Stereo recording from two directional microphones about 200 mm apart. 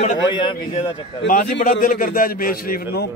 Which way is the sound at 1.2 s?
40° left (ahead or behind).